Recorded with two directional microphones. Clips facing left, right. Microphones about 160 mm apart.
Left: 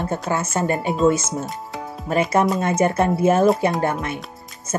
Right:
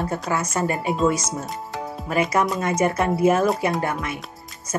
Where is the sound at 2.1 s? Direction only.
30° left (ahead or behind).